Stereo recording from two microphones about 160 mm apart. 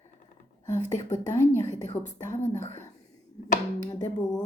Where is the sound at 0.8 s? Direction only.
50° left (ahead or behind).